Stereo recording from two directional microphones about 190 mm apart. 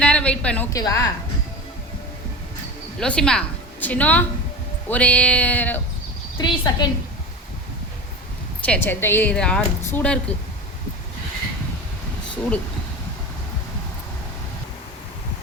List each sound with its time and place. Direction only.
0.0 s a sound: 5° left (ahead or behind)
3.0 s a woman's voice: 5° left (ahead or behind)
6.3 s a woman's voice: 25° left (ahead or behind)
8.6 s a woman's voice: 10° left (ahead or behind)